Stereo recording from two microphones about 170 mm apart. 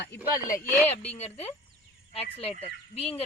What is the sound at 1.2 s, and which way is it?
Speech, 35° left (ahead or behind).